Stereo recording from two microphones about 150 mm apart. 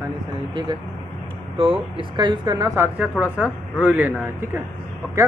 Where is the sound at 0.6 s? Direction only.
30° right (ahead or behind).